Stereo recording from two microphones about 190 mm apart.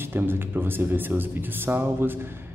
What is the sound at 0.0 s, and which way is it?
Speech, 10° right (ahead or behind).